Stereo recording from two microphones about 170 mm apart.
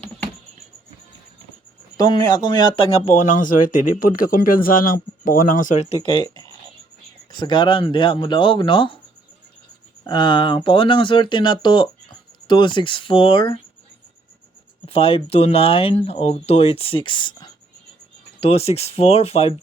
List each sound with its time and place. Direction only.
2.0 s speech: 25° left (ahead or behind)
7.3 s speech: 25° left (ahead or behind)
10.0 s speech: 25° left (ahead or behind)
14.8 s speech: 35° left (ahead or behind)